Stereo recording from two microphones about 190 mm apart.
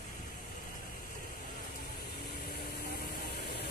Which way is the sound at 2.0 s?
55° left (ahead or behind).